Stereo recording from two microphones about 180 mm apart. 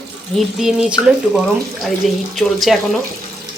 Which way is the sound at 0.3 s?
Centre (ahead or behind).